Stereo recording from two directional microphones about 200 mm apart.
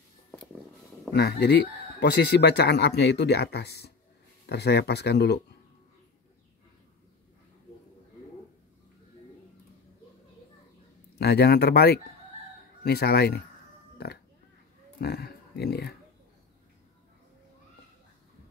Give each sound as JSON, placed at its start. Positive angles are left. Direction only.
{"t": 1.1, "sound": "speech", "side_deg": 55}
{"t": 11.1, "sound": "speech", "side_deg": 55}
{"t": 15.0, "sound": "speech", "side_deg": 50}